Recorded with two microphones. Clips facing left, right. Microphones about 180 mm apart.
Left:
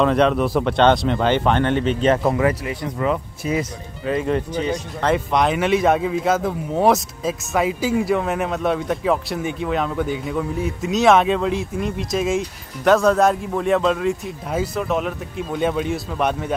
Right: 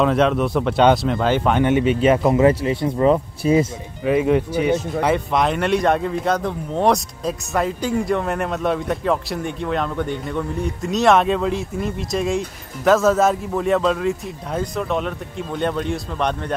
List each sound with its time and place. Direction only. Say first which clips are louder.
0.0 s speech: even; centre (ahead or behind)
2.3 s speech: right 5 dB; 25° right (ahead or behind)
4.0 s speech: right 4 dB; 10° right (ahead or behind); by 16.5 s 5° left (ahead or behind)